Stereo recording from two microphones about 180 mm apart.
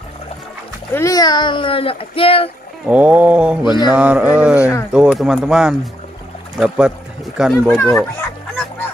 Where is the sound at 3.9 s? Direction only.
5° right (ahead or behind).